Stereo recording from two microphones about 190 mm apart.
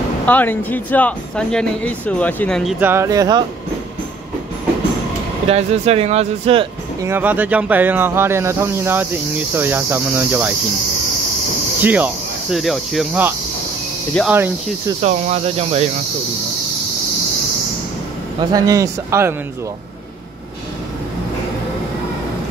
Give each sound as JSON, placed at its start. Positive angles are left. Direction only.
{"t": 0.3, "sound": "speech", "side_deg": 10}
{"t": 2.8, "sound": "speech", "side_deg": -15}
{"t": 5.5, "sound": "speech", "side_deg": -35}
{"t": 7.0, "sound": "speech", "side_deg": -10}
{"t": 11.8, "sound": "cricket", "side_deg": -10}
{"t": 14.3, "sound": "speech", "side_deg": -10}
{"t": 15.0, "sound": "speech", "side_deg": -35}
{"t": 18.5, "sound": "speech", "side_deg": -15}